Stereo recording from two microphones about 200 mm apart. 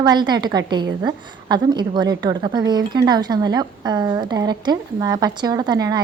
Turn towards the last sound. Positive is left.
turn(degrees=-20)  # may be behind; listen again after turning